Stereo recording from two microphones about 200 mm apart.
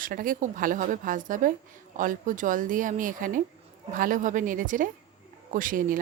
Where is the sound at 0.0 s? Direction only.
45° right (ahead or behind).